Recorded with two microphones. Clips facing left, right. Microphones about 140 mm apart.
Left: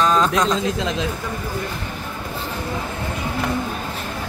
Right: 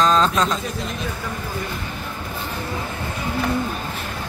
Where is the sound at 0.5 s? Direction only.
90° left.